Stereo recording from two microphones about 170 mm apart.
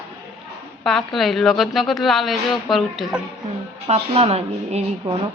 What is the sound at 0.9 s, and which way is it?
A woman's voice, centre (ahead or behind).